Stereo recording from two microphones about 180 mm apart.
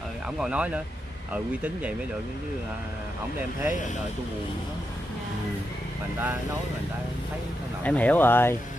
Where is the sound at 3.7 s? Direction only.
45° left (ahead or behind).